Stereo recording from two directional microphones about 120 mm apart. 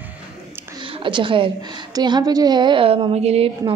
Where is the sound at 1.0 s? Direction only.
45° right (ahead or behind); by 3.5 s 60° right (ahead or behind).